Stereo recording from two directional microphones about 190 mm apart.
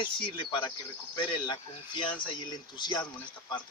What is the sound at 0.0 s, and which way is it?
Speech, 25° left (ahead or behind).